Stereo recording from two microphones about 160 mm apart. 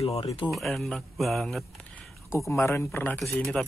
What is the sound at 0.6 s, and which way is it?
Speech, centre (ahead or behind).